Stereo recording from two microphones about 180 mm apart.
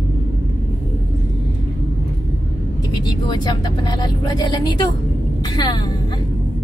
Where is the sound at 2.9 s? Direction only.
25° left (ahead or behind).